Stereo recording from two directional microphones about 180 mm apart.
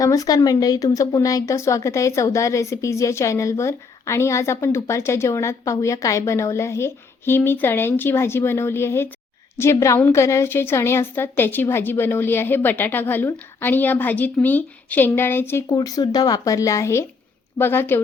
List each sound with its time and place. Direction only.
0.0 s a woman's voice: 20° left (ahead or behind)